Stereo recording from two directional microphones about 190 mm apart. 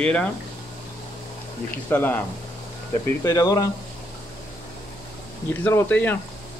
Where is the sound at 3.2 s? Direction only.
15° left (ahead or behind).